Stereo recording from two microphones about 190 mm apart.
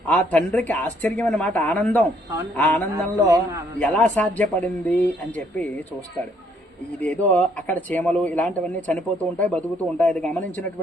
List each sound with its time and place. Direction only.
0.1 s speech: 10° left (ahead or behind)
2.9 s speech: 15° right (ahead or behind)
3.8 s speech: 5° left (ahead or behind)
7.0 s speech: 10° left (ahead or behind)